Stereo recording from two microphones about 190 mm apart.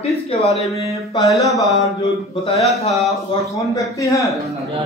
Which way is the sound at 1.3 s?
Centre (ahead or behind).